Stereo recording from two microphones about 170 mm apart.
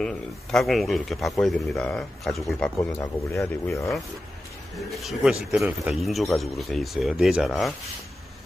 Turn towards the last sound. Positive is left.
turn(degrees=0)  # may be behind; listen again after turning